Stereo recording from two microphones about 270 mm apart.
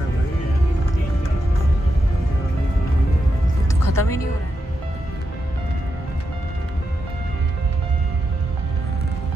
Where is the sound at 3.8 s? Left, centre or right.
Left.